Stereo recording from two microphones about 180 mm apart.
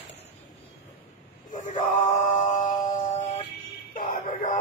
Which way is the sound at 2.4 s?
40° left (ahead or behind).